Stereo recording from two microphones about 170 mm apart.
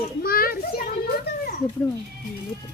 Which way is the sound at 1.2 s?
55° left (ahead or behind).